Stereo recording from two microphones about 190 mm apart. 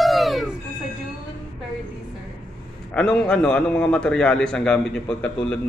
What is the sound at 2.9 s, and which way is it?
A man's voice, 5° left (ahead or behind).